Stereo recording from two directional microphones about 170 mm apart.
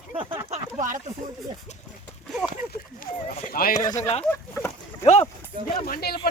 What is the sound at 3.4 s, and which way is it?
Speech, 55° left (ahead or behind).